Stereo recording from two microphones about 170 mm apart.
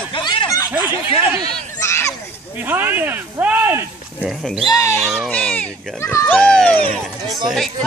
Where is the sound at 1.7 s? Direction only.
15° left (ahead or behind).